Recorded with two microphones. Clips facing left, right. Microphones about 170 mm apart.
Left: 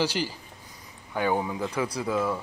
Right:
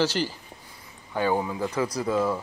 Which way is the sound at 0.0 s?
10° left (ahead or behind).